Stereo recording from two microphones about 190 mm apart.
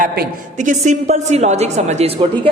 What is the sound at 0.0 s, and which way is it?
A woman's voice, 45° right (ahead or behind).